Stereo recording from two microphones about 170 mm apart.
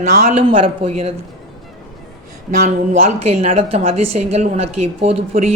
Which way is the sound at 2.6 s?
40° right (ahead or behind).